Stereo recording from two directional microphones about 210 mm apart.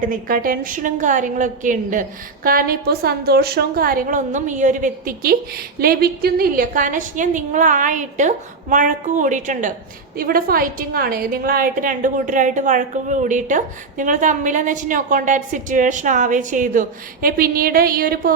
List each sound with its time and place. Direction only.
0.0 s a woman's voice: 40° right (ahead or behind)